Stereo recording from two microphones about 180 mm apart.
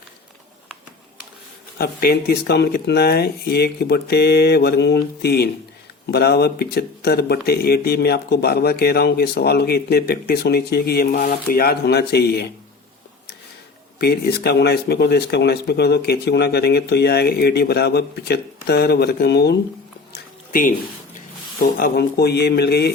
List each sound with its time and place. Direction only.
1.8 s speech: 60° left (ahead or behind)
14.0 s speech: 65° left (ahead or behind)
20.5 s speech: 50° left (ahead or behind)
21.6 s speech: 60° left (ahead or behind)